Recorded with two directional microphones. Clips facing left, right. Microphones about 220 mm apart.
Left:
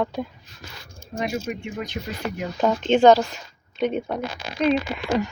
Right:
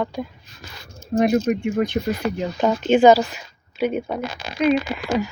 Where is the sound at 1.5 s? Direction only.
55° right (ahead or behind).